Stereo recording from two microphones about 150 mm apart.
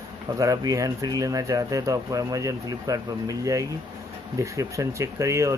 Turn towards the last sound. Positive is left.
turn(degrees=-20)  # may be behind; listen again after turning